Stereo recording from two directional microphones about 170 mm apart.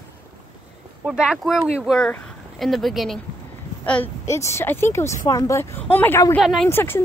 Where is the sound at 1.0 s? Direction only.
5° right (ahead or behind).